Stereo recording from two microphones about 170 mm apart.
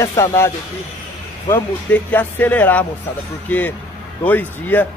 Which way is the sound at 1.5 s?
10° left (ahead or behind).